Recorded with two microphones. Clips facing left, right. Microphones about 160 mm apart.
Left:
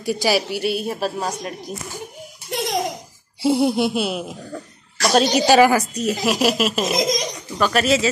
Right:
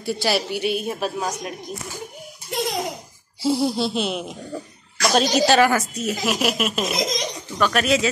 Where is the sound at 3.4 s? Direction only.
60° left (ahead or behind).